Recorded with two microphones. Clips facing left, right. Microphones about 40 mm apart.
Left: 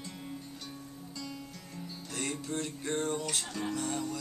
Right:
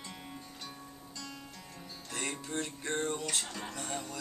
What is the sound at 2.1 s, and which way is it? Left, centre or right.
Music, centre.